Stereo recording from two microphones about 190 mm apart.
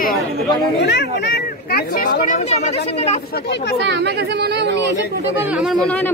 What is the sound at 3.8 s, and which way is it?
Speech, 65° right (ahead or behind).